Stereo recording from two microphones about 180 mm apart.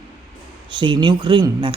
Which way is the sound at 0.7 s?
25° right (ahead or behind).